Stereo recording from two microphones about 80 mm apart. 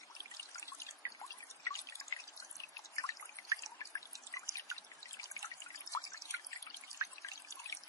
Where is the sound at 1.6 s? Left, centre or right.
Left.